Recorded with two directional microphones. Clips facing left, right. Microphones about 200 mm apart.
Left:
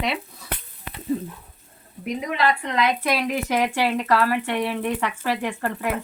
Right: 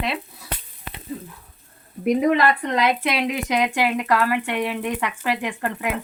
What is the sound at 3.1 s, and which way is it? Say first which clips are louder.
Speech: even; 20° right (ahead or behind).